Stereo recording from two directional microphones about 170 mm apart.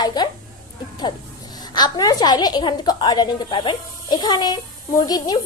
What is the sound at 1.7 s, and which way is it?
A woman's voice, 25° left (ahead or behind).